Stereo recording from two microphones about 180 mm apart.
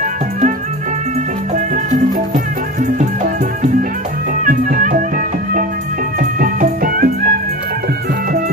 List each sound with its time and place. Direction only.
1.5 s music: 40° right (ahead or behind)
4.5 s music: 50° right (ahead or behind)